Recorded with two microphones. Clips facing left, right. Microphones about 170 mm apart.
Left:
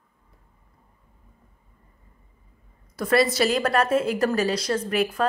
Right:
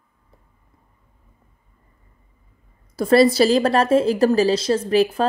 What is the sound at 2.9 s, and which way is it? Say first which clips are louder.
A woman's voice: right 7 dB; 30° right (ahead or behind).